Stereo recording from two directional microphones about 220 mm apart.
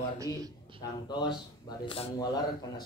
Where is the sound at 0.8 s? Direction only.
20° left (ahead or behind).